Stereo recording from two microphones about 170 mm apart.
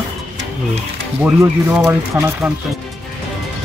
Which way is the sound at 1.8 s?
20° right (ahead or behind).